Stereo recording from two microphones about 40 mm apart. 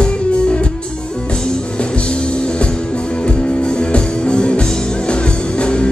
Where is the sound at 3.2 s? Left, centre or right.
Left.